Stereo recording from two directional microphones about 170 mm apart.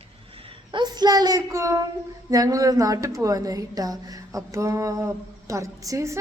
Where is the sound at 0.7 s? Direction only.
25° right (ahead or behind).